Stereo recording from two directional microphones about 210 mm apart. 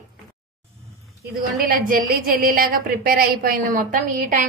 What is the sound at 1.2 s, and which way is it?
A woman's voice, 40° right (ahead or behind).